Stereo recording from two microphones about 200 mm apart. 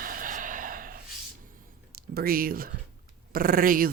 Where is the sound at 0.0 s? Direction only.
45° right (ahead or behind).